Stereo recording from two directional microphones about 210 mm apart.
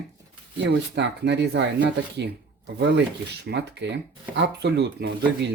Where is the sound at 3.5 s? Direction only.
55° right (ahead or behind).